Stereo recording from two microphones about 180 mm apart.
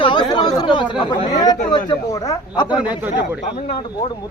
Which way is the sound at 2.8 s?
10° right (ahead or behind).